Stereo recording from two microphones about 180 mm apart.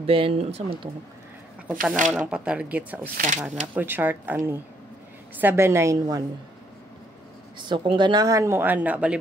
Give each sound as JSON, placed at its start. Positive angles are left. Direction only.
{"t": 0.0, "sound": "speech", "side_deg": -30}
{"t": 1.7, "sound": "a woman's voice", "side_deg": -5}
{"t": 7.5, "sound": "a woman's voice", "side_deg": -25}